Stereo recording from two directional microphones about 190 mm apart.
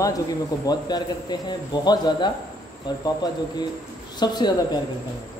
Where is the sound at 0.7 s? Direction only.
20° left (ahead or behind).